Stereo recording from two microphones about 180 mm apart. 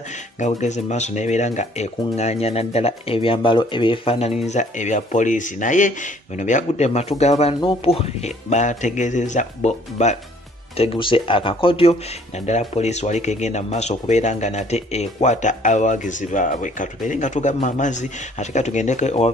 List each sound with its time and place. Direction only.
0.6 s speech: 40° left (ahead or behind)